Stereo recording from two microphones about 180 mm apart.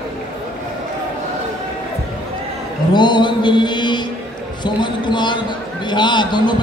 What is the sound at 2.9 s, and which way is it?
A man's voice, 25° left (ahead or behind).